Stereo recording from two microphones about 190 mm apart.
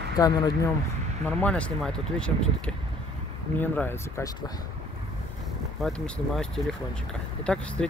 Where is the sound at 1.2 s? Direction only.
5° left (ahead or behind).